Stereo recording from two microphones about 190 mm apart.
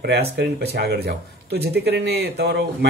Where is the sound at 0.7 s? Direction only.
55° right (ahead or behind).